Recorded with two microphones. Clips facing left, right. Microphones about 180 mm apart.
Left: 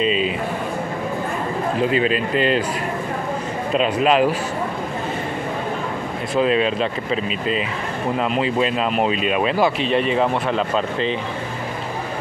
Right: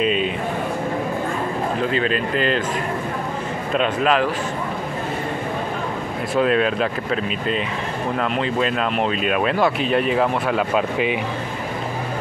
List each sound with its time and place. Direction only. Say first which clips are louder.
0.0 s speech: even; centre (ahead or behind)
2.0 s speech: left 2 dB; 40° right (ahead or behind)
3.7 s speech: left 2 dB; 5° left (ahead or behind)
6.3 s speech: even; centre (ahead or behind)
8.2 s speech: left 2 dB; 5° left (ahead or behind)